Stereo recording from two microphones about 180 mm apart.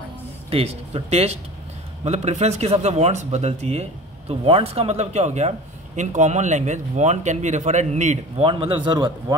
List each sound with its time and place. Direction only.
0.5 s speech: 35° right (ahead or behind)